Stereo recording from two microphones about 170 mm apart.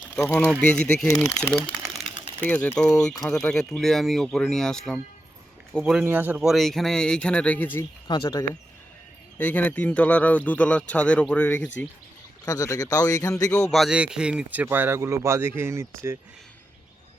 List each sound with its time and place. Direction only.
0.6 s speech: 5° left (ahead or behind)
1.5 s a sound: centre (ahead or behind)
2.5 s speech: 10° left (ahead or behind)
8.0 s speech: 30° left (ahead or behind)
9.4 s speech: 10° left (ahead or behind)
12.5 s speech: 20° left (ahead or behind)
13.5 s a man's voice: centre (ahead or behind); by 15.9 s 15° right (ahead or behind)